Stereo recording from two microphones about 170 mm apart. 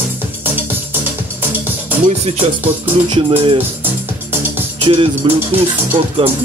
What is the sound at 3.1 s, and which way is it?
Music, 30° right (ahead or behind).